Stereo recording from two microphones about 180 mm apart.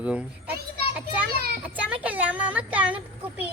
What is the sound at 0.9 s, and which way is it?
Children playing, 5° right (ahead or behind).